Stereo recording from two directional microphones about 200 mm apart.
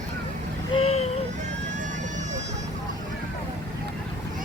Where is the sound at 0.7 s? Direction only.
30° left (ahead or behind).